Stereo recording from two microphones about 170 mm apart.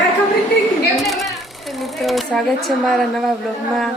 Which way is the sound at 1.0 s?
Centre (ahead or behind).